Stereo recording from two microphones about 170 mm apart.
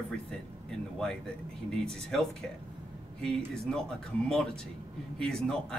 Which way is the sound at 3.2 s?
5° left (ahead or behind).